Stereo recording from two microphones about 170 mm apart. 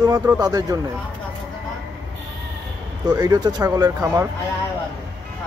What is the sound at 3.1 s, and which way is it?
Speech, 20° right (ahead or behind).